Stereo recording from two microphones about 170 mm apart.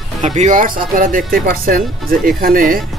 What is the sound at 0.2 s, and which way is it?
Speech, 45° right (ahead or behind).